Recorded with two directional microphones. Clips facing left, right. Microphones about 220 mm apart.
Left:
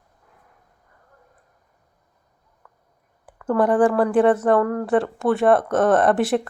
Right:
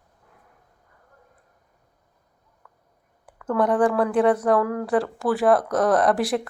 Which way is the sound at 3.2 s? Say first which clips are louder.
Left 3 dB; centre (ahead or behind).